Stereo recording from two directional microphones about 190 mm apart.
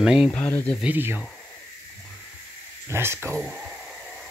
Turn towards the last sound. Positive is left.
turn(degrees=-5)  # may be behind; listen again after turning